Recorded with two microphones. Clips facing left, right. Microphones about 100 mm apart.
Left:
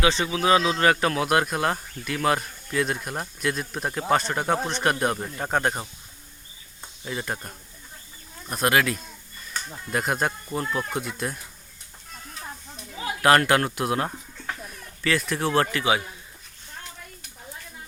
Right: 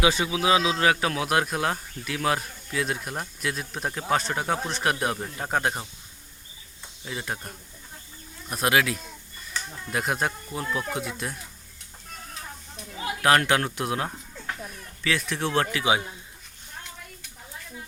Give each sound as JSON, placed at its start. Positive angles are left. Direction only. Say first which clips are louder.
{"t": 0.0, "sound": "speech", "louder": "left 1 dB", "side_deg": -10}
{"t": 7.1, "sound": "speech", "louder": "left 2 dB", "side_deg": 0}
{"t": 13.2, "sound": "speech", "louder": "left 3 dB", "side_deg": 0}
{"t": 15.8, "sound": "a man's voice", "louder": "even", "side_deg": -20}